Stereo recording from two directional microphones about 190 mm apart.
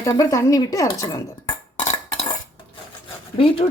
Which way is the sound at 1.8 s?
35° left (ahead or behind).